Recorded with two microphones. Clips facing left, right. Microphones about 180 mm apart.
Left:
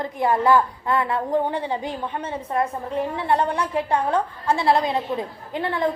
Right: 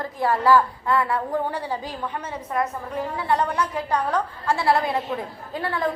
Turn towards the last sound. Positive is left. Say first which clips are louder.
# left 2 dB
turn(degrees=20)  # may be behind; listen again after turning